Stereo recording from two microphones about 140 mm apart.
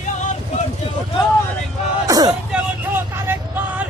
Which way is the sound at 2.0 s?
25° right (ahead or behind).